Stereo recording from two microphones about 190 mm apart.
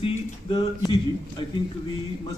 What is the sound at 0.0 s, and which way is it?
Speech, 25° left (ahead or behind).